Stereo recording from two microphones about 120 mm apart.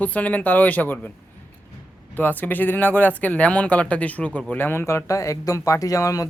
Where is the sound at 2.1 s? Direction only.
15° left (ahead or behind).